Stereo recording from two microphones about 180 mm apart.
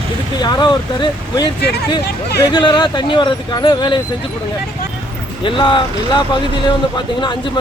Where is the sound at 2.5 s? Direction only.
25° left (ahead or behind).